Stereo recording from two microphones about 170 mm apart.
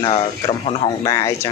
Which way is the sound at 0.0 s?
30° left (ahead or behind).